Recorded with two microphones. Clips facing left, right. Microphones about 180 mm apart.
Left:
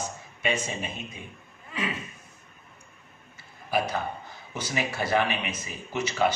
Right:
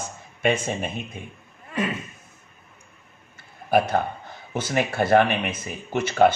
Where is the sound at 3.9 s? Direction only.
55° right (ahead or behind).